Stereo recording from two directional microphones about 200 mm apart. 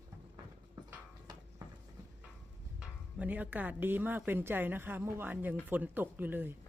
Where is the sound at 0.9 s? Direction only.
20° right (ahead or behind).